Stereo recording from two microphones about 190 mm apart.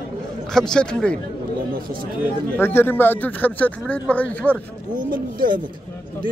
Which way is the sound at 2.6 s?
10° left (ahead or behind).